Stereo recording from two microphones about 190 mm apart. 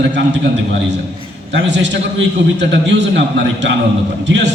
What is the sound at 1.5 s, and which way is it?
A man's voice, 65° right (ahead or behind).